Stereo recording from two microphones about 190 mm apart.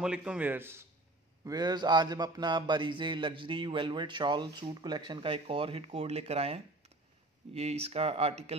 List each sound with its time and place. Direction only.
0.0 s a man's voice: 5° right (ahead or behind)
1.4 s a sound: 20° right (ahead or behind)
7.5 s speech: 35° right (ahead or behind)